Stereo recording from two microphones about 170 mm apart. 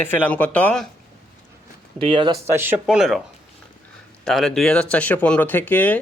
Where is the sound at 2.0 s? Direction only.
30° right (ahead or behind).